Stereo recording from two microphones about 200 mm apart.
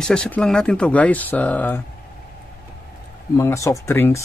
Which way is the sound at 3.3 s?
15° left (ahead or behind).